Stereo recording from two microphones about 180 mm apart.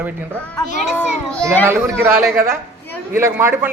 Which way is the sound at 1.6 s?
15° right (ahead or behind).